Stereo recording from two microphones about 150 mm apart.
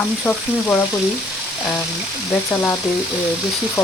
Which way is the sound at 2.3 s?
10° left (ahead or behind).